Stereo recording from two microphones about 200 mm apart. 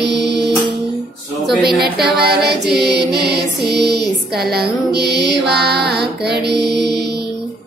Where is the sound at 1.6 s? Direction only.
50° right (ahead or behind).